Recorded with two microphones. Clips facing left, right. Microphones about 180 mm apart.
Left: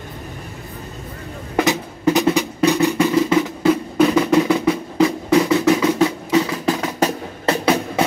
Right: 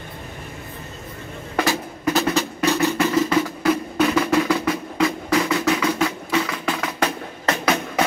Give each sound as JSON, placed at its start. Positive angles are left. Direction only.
{"t": 1.6, "sound": "music", "side_deg": 20}